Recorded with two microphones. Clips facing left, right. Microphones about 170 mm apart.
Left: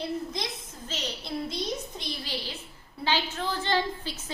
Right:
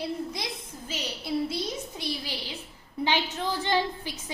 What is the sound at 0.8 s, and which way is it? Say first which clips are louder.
A woman's voice: right 2 dB; 10° right (ahead or behind).